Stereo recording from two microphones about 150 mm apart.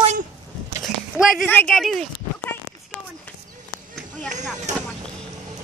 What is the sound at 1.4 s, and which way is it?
Speech, 10° left (ahead or behind).